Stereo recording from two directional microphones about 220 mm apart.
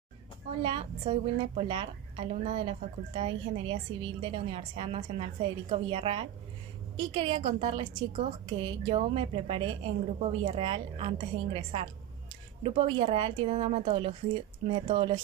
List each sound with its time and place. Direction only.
0.6 s a woman's voice: 25° right (ahead or behind)